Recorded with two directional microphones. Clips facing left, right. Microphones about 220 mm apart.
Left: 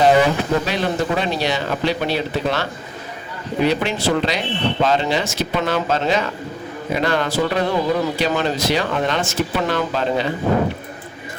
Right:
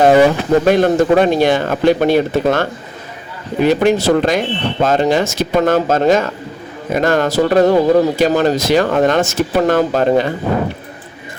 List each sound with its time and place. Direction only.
0.6 s speech: 50° right (ahead or behind)